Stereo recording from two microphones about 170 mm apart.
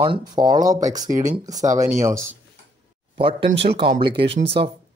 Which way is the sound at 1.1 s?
45° right (ahead or behind).